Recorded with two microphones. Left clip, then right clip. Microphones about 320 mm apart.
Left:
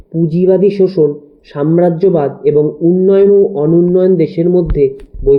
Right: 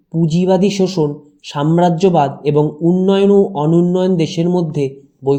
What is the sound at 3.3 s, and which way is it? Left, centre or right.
Speech, right.